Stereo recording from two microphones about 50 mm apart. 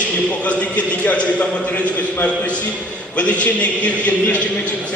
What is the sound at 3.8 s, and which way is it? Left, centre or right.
Speech, left.